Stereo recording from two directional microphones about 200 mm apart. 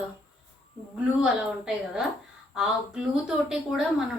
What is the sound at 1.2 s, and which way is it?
Speech, 5° right (ahead or behind).